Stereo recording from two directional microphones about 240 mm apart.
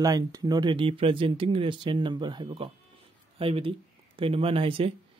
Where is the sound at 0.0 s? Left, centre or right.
Centre.